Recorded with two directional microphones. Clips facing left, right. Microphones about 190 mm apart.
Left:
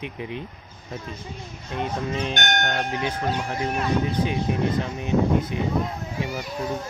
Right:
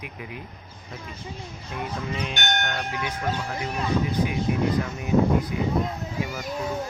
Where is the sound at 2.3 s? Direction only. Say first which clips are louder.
Left 3 dB; 45° left (ahead or behind).